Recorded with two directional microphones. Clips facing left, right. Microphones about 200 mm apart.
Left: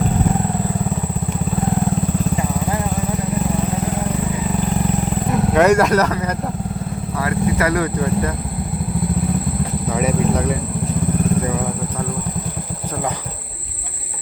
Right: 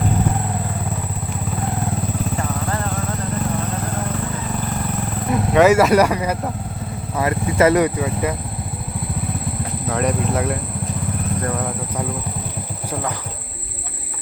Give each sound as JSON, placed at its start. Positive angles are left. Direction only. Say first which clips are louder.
{"t": 2.4, "sound": "vehicle", "louder": "left 3 dB", "side_deg": 10}
{"t": 5.3, "sound": "speech", "louder": "right 1 dB", "side_deg": 0}
{"t": 7.2, "sound": "vehicle", "louder": "right 2 dB", "side_deg": -20}
{"t": 7.9, "sound": "speech", "louder": "left 2 dB", "side_deg": -5}
{"t": 9.9, "sound": "speech", "louder": "left 1 dB", "side_deg": 5}